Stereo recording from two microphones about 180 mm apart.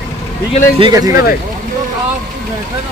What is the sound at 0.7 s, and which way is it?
Speech, 25° right (ahead or behind).